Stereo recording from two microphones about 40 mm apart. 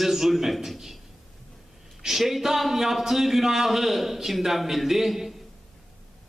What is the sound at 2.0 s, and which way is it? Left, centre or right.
A man's voice, centre.